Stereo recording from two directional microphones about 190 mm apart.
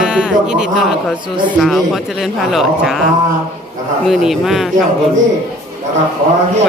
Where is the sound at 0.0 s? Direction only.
5° right (ahead or behind).